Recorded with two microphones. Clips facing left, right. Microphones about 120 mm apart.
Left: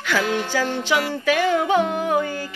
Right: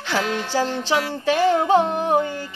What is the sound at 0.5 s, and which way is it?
Music, 35° right (ahead or behind).